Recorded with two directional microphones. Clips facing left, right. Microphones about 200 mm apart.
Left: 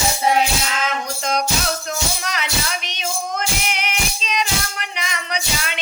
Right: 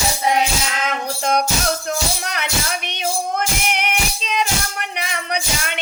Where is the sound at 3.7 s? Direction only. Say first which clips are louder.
Right 3 dB; 60° right (ahead or behind).